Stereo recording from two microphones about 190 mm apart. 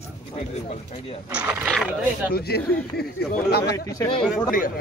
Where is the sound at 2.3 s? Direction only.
55° left (ahead or behind).